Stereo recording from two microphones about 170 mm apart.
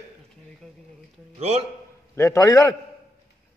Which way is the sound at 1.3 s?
35° right (ahead or behind).